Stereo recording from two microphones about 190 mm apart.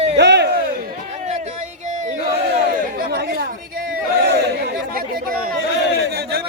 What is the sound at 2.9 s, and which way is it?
Chatter, 55° right (ahead or behind).